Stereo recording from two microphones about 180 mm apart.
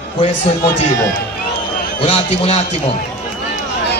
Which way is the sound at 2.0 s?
35° left (ahead or behind).